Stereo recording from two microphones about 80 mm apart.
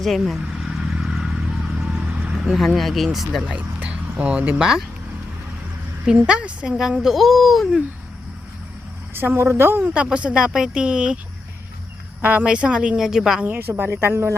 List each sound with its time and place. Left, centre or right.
0.0 s speech: centre
1.0 s vehicle: centre
2.6 s speech: centre
3.4 s music: centre
4.2 s speech: centre
6.1 s speech: centre
9.1 s a woman's voice: right
9.9 s speech: centre
12.2 s speech: centre
13.4 s a woman's voice: right